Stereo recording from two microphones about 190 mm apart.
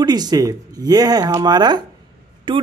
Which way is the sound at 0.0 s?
20° right (ahead or behind).